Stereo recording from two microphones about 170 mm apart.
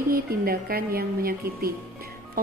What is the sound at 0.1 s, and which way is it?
A woman's voice, 60° right (ahead or behind).